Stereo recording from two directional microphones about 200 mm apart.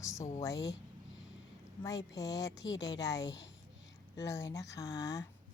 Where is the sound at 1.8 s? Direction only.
20° left (ahead or behind).